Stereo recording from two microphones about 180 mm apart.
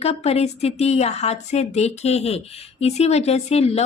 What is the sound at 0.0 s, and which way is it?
A woman's voice, 35° left (ahead or behind).